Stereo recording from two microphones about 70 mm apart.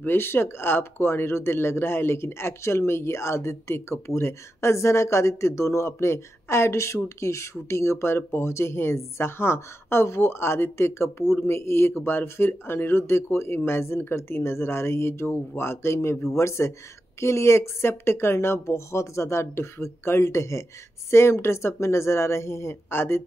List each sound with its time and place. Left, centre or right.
0.0 s speech: left